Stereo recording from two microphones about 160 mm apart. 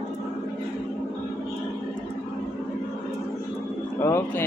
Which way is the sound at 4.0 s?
15° left (ahead or behind).